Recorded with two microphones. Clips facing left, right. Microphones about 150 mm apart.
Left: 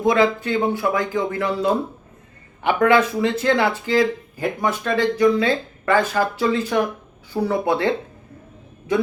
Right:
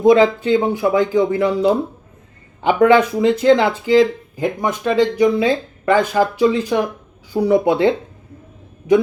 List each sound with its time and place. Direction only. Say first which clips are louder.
0.0 s speech: right 6 dB; 20° right (ahead or behind)